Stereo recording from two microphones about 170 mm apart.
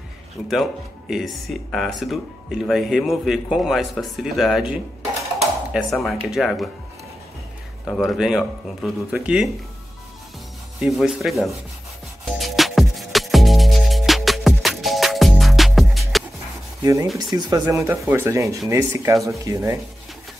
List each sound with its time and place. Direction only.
0.5 s speech: centre (ahead or behind)
7.8 s speech: centre (ahead or behind)
10.8 s speech: 5° right (ahead or behind)
12.3 s music: centre (ahead or behind)
16.8 s speech: 20° right (ahead or behind)